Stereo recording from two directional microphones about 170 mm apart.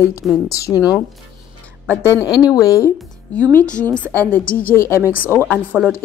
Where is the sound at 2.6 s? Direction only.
20° left (ahead or behind).